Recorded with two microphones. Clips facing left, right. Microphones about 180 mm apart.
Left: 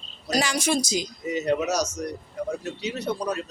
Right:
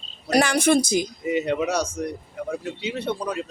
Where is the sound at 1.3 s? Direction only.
30° right (ahead or behind).